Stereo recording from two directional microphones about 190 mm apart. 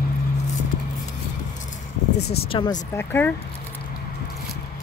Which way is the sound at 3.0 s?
10° left (ahead or behind).